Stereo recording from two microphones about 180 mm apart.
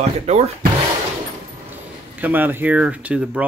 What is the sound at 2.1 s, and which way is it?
Speech, 10° right (ahead or behind).